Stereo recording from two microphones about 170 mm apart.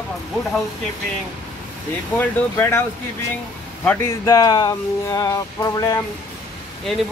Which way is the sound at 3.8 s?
15° left (ahead or behind).